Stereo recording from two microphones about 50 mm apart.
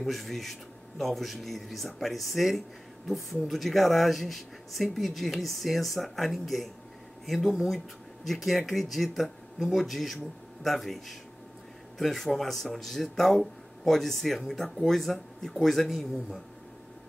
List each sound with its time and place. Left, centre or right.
0.0 s speech: centre